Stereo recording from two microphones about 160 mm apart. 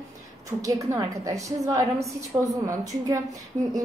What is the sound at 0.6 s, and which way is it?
A woman's voice, 20° right (ahead or behind).